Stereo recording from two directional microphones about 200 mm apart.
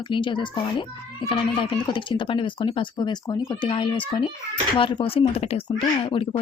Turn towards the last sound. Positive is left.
turn(degrees=25)  # may be behind; listen again after turning